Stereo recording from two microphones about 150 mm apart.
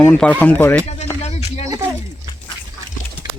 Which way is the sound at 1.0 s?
45° left (ahead or behind).